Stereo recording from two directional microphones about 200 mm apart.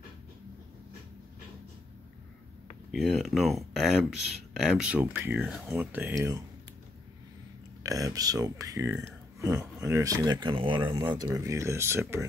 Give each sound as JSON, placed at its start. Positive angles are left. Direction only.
{"t": 2.9, "sound": "a sound", "side_deg": 0}
{"t": 4.6, "sound": "speech", "side_deg": 0}
{"t": 7.8, "sound": "speech", "side_deg": -15}